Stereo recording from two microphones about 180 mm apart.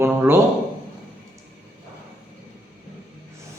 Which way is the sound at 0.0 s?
15° right (ahead or behind).